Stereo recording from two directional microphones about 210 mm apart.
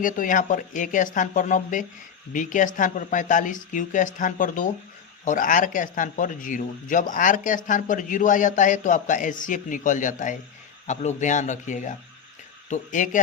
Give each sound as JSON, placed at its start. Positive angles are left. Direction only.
{"t": 0.0, "sound": "speech", "side_deg": 40}